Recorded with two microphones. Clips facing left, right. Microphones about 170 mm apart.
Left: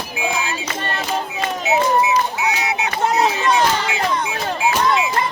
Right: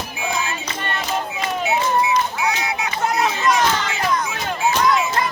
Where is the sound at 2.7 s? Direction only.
30° left (ahead or behind).